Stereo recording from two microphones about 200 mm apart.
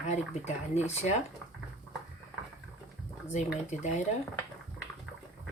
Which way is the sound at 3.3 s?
35° left (ahead or behind).